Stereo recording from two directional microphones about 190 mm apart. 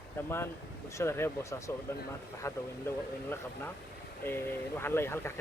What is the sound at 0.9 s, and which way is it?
Speech, 15° left (ahead or behind).